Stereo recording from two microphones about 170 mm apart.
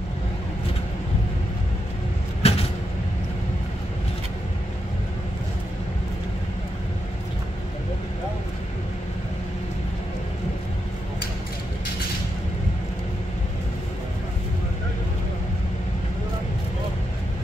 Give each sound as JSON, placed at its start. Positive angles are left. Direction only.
{"t": 2.4, "sound": "vehicle", "side_deg": 35}